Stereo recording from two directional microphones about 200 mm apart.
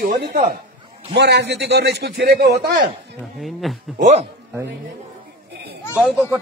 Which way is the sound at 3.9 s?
35° right (ahead or behind).